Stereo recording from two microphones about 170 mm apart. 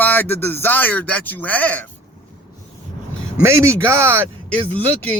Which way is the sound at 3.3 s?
15° right (ahead or behind).